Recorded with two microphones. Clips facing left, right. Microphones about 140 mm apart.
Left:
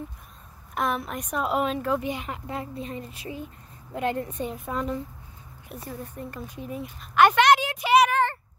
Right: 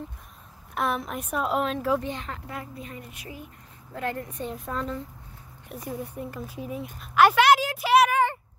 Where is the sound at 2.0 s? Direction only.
10° left (ahead or behind).